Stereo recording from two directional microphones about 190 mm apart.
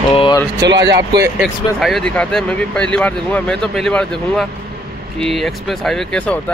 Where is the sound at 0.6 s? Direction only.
65° right (ahead or behind).